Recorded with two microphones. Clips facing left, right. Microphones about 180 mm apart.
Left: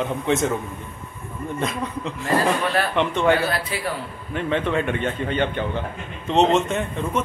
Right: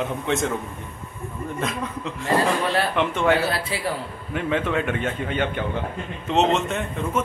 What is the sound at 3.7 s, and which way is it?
Speech, 30° right (ahead or behind).